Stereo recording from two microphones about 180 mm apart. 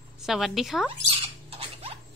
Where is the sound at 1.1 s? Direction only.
30° right (ahead or behind).